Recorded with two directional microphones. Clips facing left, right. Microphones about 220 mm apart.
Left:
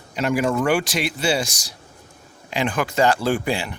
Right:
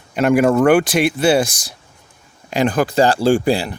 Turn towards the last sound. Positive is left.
turn(degrees=-35)  # may be behind; listen again after turning